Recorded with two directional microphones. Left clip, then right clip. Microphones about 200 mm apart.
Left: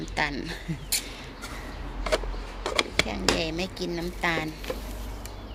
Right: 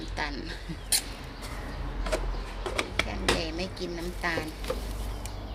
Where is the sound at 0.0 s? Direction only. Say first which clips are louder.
Left 5 dB; 45° left (ahead or behind).